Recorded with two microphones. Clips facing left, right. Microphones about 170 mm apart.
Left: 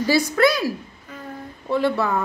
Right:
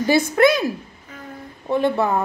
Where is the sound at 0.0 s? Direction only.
20° right (ahead or behind).